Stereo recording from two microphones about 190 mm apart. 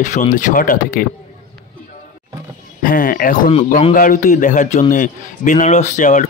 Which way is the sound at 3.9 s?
45° left (ahead or behind).